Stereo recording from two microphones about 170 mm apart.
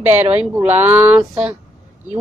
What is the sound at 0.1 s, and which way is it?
A woman's voice, 10° right (ahead or behind).